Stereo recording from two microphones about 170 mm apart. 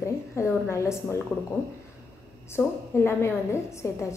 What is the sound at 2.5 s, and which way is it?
A woman's voice, 15° left (ahead or behind).